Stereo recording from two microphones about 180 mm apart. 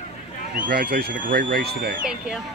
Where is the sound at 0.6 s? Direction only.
55° right (ahead or behind).